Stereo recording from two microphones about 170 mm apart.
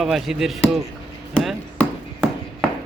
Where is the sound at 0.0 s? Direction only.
Centre (ahead or behind).